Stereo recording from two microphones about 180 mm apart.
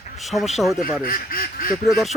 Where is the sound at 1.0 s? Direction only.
55° left (ahead or behind).